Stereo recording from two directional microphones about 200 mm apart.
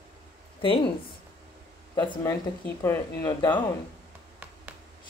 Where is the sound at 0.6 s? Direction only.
25° left (ahead or behind).